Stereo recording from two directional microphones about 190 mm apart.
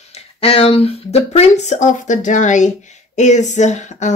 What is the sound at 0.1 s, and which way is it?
Speech, 30° left (ahead or behind).